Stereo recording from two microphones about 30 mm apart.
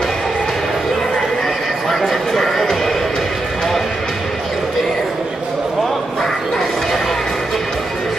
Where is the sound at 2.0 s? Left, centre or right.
Centre.